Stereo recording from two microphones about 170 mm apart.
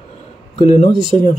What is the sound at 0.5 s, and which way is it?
Speech, 40° left (ahead or behind).